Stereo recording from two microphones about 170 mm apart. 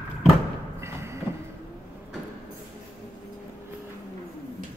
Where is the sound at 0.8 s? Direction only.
15° right (ahead or behind).